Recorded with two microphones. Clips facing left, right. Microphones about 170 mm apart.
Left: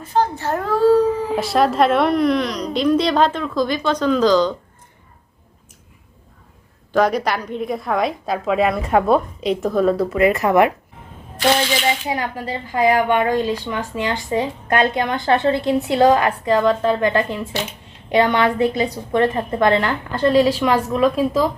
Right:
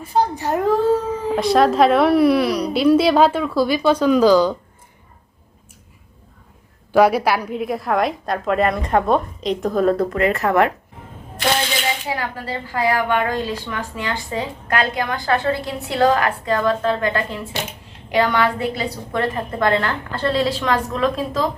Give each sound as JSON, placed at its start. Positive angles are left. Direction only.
{"t": 0.0, "sound": "a woman's voice", "side_deg": -10}
{"t": 1.4, "sound": "a woman's voice", "side_deg": 0}
{"t": 6.9, "sound": "a woman's voice", "side_deg": -10}
{"t": 12.0, "sound": "a woman's voice", "side_deg": 15}